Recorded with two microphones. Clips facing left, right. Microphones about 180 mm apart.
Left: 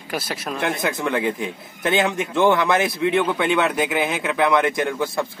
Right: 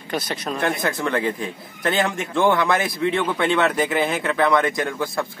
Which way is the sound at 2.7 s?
5° left (ahead or behind).